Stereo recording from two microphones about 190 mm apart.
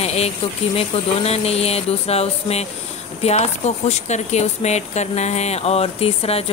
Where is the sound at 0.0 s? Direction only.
35° left (ahead or behind).